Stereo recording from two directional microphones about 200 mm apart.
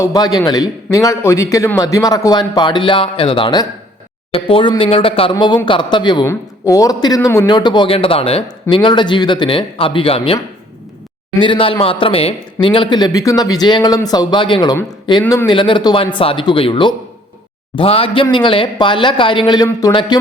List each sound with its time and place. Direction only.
0.0 s a man's voice: 20° left (ahead or behind)
15.4 s speech: 25° left (ahead or behind)